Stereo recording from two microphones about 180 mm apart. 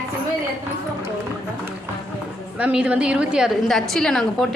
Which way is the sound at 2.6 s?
5° right (ahead or behind).